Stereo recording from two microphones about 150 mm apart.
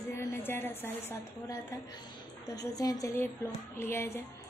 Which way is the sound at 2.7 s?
25° left (ahead or behind).